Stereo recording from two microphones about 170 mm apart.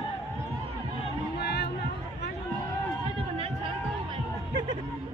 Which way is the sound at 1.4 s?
70° left (ahead or behind).